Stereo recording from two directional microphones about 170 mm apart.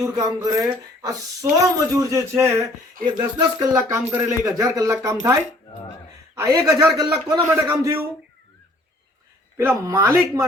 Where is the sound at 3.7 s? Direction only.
15° right (ahead or behind).